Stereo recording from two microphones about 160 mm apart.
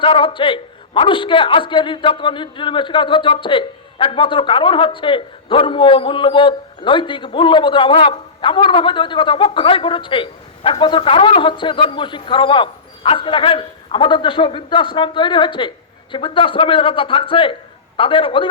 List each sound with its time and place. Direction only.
0.0 s a man's voice: 35° left (ahead or behind)